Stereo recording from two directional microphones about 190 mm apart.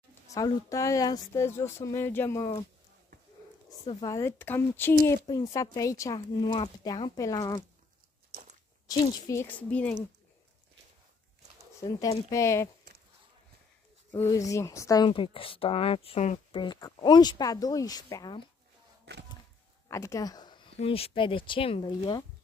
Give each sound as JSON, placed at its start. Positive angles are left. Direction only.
{"t": 0.3, "sound": "speech", "side_deg": 15}
{"t": 3.8, "sound": "speech", "side_deg": 20}
{"t": 8.8, "sound": "speech", "side_deg": 15}
{"t": 11.8, "sound": "speech", "side_deg": 20}
{"t": 14.1, "sound": "speech", "side_deg": 15}
{"t": 19.1, "sound": "a sound", "side_deg": -65}
{"t": 19.9, "sound": "speech", "side_deg": 15}